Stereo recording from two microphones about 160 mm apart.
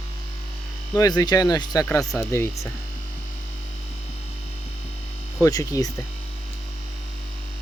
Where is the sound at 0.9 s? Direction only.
20° left (ahead or behind).